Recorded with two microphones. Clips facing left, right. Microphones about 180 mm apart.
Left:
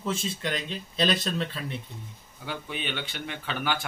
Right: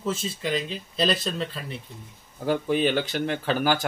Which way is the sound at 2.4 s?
40° right (ahead or behind).